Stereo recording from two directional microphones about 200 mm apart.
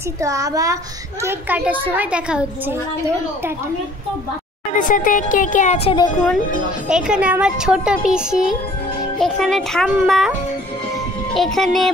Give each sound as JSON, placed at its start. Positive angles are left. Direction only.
{"t": 0.2, "sound": "a child's voice", "side_deg": -15}
{"t": 4.7, "sound": "speech", "side_deg": 40}
{"t": 6.9, "sound": "a woman's voice", "side_deg": -5}
{"t": 11.3, "sound": "a woman's voice", "side_deg": 0}